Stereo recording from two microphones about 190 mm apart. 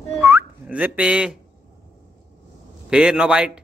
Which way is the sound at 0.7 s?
5° right (ahead or behind).